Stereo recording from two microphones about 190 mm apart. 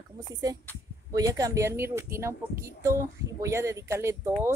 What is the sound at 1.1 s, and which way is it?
Speech, 20° right (ahead or behind).